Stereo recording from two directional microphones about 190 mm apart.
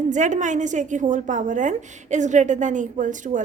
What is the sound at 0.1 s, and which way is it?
A woman's voice, 40° right (ahead or behind).